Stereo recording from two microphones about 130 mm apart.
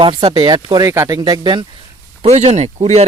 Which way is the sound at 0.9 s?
20° right (ahead or behind).